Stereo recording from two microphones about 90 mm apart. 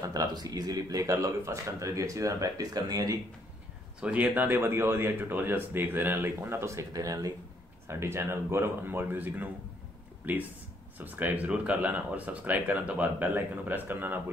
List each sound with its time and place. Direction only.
0.0 s speech: 40° right (ahead or behind)
4.0 s speech: 15° right (ahead or behind); by 7.3 s 40° right (ahead or behind)
7.9 s speech: 30° right (ahead or behind)